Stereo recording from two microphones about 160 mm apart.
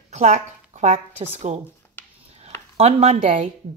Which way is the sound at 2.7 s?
40° right (ahead or behind).